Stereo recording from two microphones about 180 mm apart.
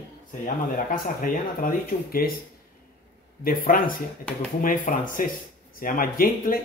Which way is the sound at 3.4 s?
55° left (ahead or behind).